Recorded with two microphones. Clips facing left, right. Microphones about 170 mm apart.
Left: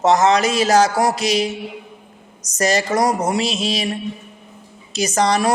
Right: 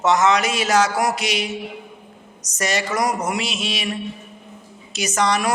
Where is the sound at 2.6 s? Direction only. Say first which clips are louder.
Left 5 dB; 35° left (ahead or behind).